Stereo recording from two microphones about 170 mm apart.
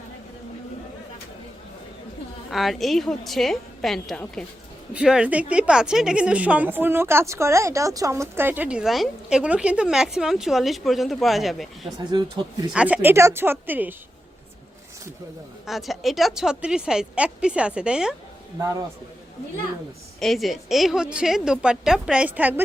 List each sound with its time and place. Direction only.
2.5 s a woman's voice: centre (ahead or behind)
12.1 s speech: 25° right (ahead or behind)
12.7 s speech: 5° right (ahead or behind)
15.6 s a woman's voice: centre (ahead or behind)
20.1 s a woman's voice: centre (ahead or behind)